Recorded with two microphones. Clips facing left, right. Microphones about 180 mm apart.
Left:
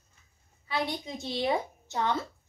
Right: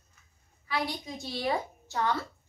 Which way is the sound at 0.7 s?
25° left (ahead or behind).